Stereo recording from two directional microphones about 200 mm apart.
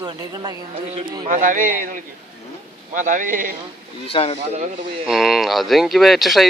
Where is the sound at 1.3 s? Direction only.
40° right (ahead or behind).